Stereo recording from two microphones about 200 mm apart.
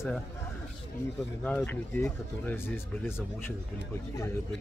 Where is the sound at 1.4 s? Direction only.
10° left (ahead or behind).